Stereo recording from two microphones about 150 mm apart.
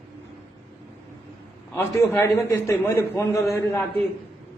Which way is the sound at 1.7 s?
15° left (ahead or behind).